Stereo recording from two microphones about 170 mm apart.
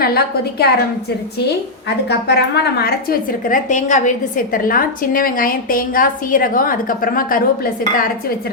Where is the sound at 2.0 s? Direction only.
75° left (ahead or behind); by 8.1 s 55° left (ahead or behind).